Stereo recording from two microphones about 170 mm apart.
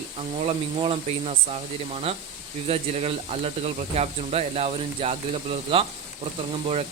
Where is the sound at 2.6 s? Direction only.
40° right (ahead or behind).